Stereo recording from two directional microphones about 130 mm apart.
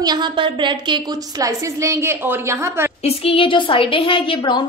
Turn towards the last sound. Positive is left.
turn(degrees=35)  # may be behind; listen again after turning